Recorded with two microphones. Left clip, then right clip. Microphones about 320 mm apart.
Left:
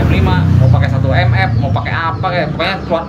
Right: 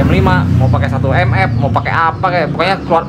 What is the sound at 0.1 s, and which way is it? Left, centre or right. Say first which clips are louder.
Speech: right 3 dB; centre.